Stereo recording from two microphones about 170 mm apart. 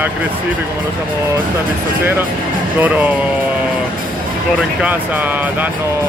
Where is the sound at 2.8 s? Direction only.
10° right (ahead or behind).